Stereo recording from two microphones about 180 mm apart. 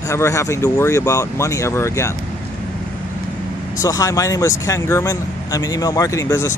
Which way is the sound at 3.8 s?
20° left (ahead or behind).